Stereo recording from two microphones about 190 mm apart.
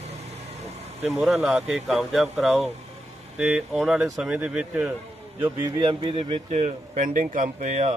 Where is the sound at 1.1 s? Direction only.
Centre (ahead or behind).